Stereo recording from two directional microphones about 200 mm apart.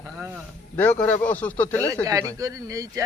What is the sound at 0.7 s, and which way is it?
Speech, 10° left (ahead or behind).